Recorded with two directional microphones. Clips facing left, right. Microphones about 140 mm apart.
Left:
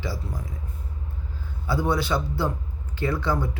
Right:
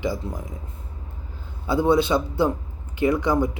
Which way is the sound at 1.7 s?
20° right (ahead or behind).